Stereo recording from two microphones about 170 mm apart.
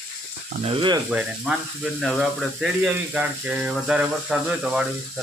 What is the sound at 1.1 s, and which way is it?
Speech, 5° right (ahead or behind).